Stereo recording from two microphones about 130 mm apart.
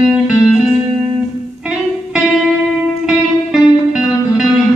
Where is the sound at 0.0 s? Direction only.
5° right (ahead or behind).